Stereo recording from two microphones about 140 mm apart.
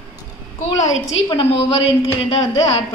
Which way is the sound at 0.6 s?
55° left (ahead or behind).